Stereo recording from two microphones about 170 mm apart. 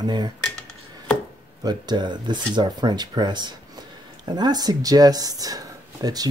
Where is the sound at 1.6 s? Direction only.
25° right (ahead or behind).